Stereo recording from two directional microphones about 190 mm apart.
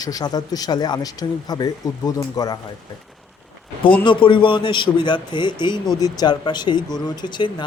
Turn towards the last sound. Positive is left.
turn(degrees=25)  # may be behind; listen again after turning